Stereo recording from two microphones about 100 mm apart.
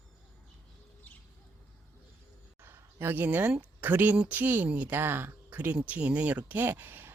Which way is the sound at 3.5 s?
15° right (ahead or behind).